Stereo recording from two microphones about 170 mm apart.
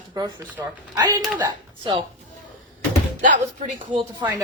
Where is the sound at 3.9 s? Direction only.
25° right (ahead or behind).